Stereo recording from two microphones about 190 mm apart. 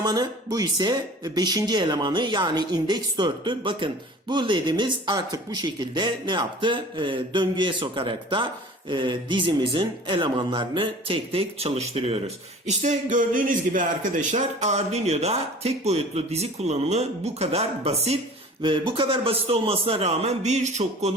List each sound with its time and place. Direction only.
0.0 s speech: 20° right (ahead or behind); by 21.1 s 35° right (ahead or behind)